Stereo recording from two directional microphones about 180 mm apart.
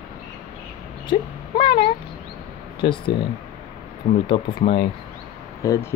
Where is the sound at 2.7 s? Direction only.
30° left (ahead or behind).